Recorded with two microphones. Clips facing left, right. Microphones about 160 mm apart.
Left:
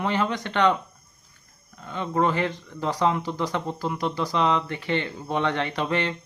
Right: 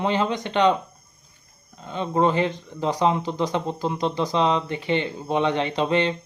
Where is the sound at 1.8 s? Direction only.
20° right (ahead or behind).